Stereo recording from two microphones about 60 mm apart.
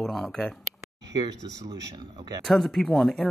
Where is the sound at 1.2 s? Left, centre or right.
Right.